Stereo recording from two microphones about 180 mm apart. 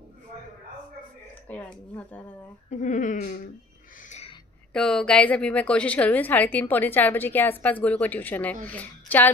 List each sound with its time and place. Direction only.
1.5 s a woman's voice: 10° left (ahead or behind)
2.7 s speech: 45° left (ahead or behind)
4.7 s a woman's voice: 5° left (ahead or behind)